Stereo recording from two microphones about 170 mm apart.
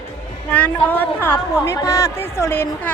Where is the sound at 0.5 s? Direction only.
10° left (ahead or behind).